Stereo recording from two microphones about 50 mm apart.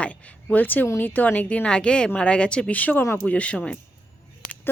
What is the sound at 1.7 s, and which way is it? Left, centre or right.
A woman's voice, centre.